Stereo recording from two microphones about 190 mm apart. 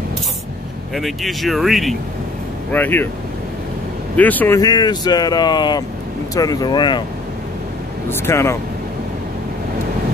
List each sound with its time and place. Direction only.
0.9 s speech: centre (ahead or behind)
4.2 s speech: 10° left (ahead or behind)
4.6 s speech: 20° left (ahead or behind)
8.1 s speech: 15° left (ahead or behind)